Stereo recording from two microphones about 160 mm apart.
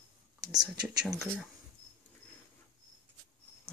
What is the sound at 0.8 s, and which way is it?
Speech, 5° right (ahead or behind).